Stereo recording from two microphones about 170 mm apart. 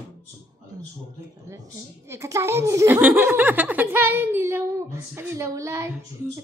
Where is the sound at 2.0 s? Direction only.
15° right (ahead or behind).